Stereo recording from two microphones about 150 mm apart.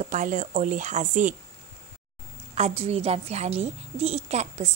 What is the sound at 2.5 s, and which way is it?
A woman's voice, 45° right (ahead or behind).